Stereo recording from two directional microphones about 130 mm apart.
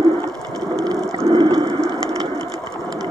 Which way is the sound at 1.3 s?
35° right (ahead or behind).